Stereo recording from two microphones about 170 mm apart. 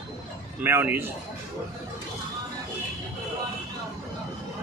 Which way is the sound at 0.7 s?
15° right (ahead or behind).